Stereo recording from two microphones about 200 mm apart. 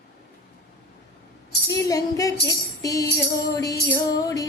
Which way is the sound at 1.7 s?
15° left (ahead or behind).